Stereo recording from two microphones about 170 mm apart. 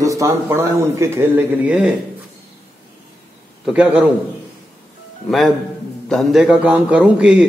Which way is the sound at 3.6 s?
5° right (ahead or behind).